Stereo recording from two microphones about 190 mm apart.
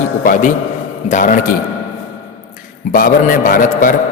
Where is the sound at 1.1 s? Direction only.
45° left (ahead or behind).